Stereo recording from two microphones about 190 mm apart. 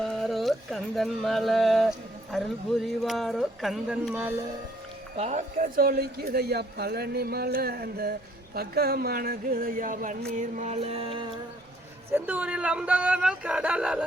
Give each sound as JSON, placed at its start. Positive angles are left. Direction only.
{"t": 0.0, "sound": "a sound", "side_deg": 0}
{"t": 2.8, "sound": "speech", "side_deg": 0}
{"t": 5.1, "sound": "speech", "side_deg": -35}
{"t": 10.3, "sound": "music", "side_deg": -40}
{"t": 12.1, "sound": "speech", "side_deg": -10}